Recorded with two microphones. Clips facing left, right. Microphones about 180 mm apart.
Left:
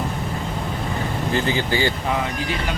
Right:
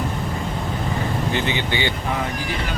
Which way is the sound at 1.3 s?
35° left (ahead or behind).